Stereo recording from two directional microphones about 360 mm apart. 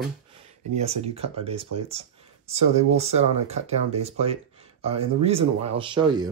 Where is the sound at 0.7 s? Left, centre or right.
Centre.